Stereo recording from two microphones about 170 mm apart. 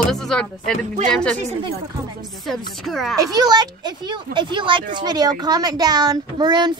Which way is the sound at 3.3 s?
25° right (ahead or behind).